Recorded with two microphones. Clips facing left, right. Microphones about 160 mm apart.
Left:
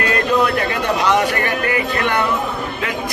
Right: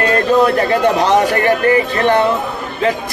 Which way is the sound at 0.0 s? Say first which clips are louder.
Right 5 dB; 35° right (ahead or behind).